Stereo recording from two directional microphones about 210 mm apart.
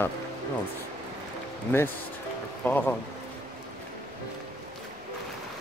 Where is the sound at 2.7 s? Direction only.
10° left (ahead or behind).